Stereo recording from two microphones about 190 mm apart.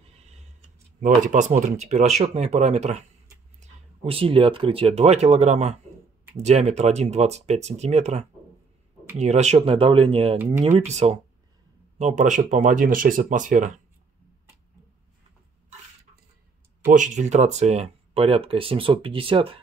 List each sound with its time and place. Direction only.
0.0 s tick-tock: 35° right (ahead or behind)
1.0 s speech: 40° right (ahead or behind)
16.8 s speech: 40° right (ahead or behind)